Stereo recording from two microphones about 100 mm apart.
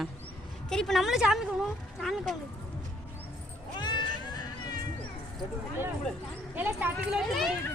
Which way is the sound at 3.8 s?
50° left (ahead or behind).